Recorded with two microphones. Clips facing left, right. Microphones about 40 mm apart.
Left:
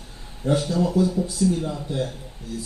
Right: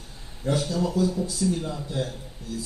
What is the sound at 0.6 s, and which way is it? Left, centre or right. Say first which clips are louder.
Speech: left 2 dB; left.